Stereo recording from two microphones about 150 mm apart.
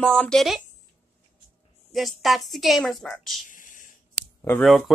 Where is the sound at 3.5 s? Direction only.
60° left (ahead or behind).